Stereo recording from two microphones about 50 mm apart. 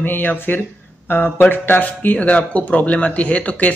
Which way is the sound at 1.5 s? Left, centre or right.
Left.